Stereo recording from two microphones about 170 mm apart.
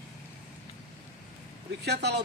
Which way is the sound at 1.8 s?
75° right (ahead or behind).